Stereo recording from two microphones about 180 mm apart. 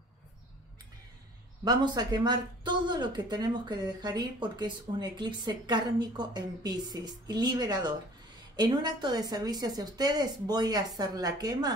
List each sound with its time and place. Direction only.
1.6 s speech: 25° right (ahead or behind)